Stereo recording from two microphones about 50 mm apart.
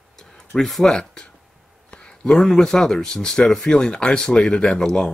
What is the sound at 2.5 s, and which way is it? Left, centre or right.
Speech, centre.